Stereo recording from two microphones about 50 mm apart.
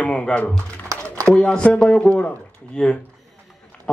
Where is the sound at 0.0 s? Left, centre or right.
Left.